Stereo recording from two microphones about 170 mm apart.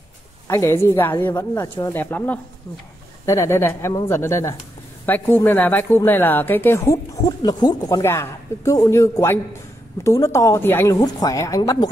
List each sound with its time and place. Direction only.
0.5 s a woman's voice: 15° left (ahead or behind)